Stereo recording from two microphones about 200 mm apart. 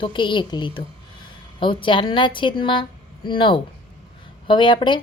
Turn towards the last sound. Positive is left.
turn(degrees=25)  # may be behind; listen again after turning